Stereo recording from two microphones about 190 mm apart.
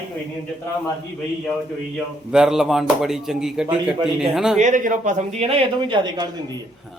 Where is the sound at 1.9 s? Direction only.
5° right (ahead or behind).